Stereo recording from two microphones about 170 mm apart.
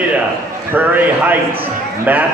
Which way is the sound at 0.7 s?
10° right (ahead or behind).